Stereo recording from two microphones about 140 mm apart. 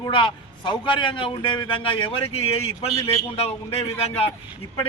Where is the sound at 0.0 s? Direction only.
35° left (ahead or behind).